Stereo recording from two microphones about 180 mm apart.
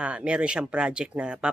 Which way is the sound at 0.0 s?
5° right (ahead or behind).